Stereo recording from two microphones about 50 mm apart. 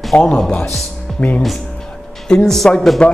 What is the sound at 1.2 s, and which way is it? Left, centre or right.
Speech, left.